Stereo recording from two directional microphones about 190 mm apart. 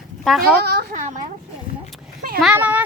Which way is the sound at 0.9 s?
40° right (ahead or behind).